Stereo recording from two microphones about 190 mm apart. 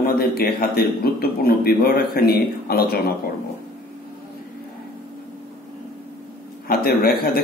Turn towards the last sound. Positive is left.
turn(degrees=55)  # may be behind; listen again after turning